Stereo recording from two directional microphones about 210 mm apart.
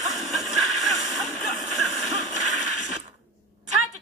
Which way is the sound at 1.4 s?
Centre (ahead or behind).